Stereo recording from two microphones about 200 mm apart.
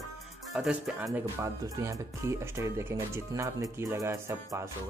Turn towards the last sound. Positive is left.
turn(degrees=-15)  # may be behind; listen again after turning